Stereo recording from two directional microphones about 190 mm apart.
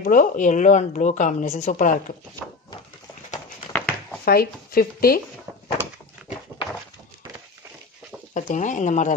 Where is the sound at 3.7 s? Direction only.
10° left (ahead or behind).